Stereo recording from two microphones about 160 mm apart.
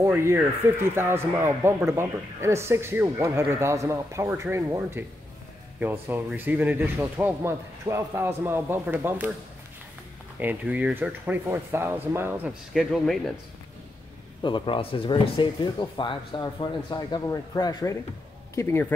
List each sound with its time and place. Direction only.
0.0 s a man's voice: 15° right (ahead or behind)
10.4 s a man's voice: 10° right (ahead or behind)
12.7 s a man's voice: centre (ahead or behind)
14.4 s speech: 30° left (ahead or behind); by 18.9 s 15° left (ahead or behind)